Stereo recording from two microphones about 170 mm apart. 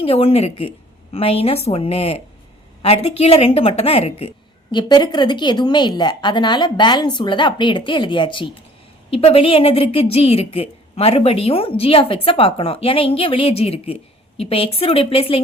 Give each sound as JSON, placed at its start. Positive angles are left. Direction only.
{"t": 0.0, "sound": "a woman's voice", "side_deg": 35}